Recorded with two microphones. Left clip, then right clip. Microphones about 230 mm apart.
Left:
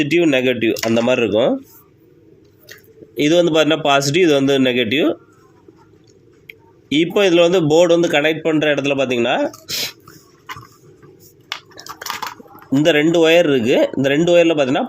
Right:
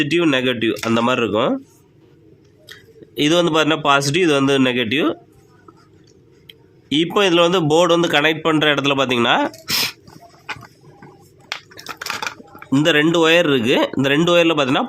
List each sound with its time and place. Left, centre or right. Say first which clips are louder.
0.0 s speech: left 2 dB; centre
3.2 s speech: left 2 dB; centre
6.5 s speech: left 1 dB; centre; by 9.9 s right
11.7 s a sound: right 1 dB; centre
12.8 s speech: left 2 dB; centre